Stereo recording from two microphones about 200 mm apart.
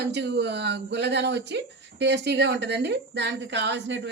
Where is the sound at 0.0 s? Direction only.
60° right (ahead or behind).